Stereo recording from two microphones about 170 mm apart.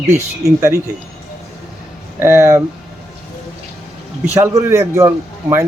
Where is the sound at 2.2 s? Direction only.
15° right (ahead or behind).